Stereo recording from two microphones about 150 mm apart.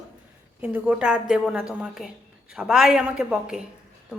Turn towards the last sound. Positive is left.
turn(degrees=-5)  # may be behind; listen again after turning